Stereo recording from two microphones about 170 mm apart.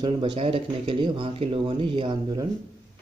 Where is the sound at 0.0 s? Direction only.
30° right (ahead or behind).